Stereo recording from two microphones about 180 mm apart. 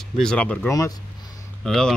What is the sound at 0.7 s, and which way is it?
Speech, 15° left (ahead or behind).